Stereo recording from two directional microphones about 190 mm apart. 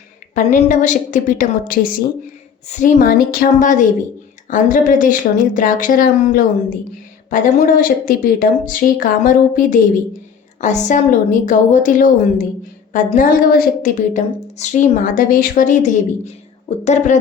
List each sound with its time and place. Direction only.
0.3 s a woman's voice: 40° left (ahead or behind)